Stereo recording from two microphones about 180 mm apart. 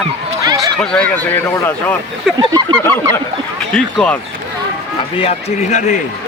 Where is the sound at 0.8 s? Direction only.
5° left (ahead or behind).